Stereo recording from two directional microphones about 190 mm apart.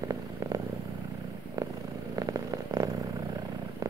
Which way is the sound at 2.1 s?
20° right (ahead or behind).